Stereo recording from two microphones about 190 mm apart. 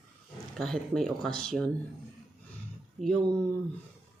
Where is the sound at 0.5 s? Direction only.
Centre (ahead or behind).